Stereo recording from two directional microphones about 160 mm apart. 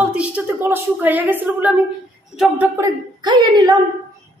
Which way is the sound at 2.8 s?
30° right (ahead or behind).